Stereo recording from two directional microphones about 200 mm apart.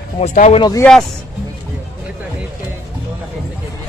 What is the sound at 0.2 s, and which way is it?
Speech, 35° left (ahead or behind).